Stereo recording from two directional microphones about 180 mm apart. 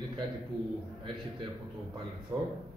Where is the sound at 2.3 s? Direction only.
20° right (ahead or behind).